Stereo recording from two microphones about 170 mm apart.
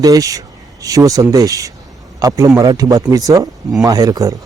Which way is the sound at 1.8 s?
Centre (ahead or behind).